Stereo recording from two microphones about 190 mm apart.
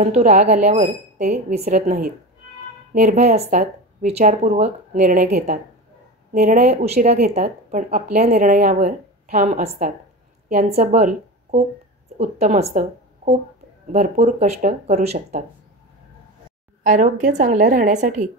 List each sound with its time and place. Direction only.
0.0 s a woman's voice: 35° right (ahead or behind)
0.8 s speech: 50° right (ahead or behind)
1.3 s a woman's voice: 35° right (ahead or behind)
7.2 s a woman's voice: 50° right (ahead or behind)
16.8 s a woman's voice: 40° right (ahead or behind)